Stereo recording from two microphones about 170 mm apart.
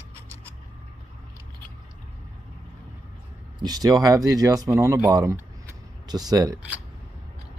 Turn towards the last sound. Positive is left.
turn(degrees=-20)  # may be behind; listen again after turning